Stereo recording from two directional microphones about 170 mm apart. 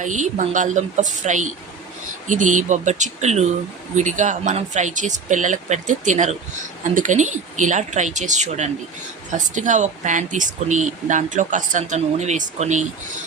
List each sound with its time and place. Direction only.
0.0 s speech: 45° right (ahead or behind)